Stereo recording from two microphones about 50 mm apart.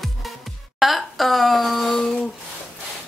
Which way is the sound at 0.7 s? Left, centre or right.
Centre.